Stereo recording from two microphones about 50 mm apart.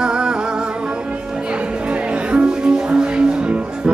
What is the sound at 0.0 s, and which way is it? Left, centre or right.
Music, centre.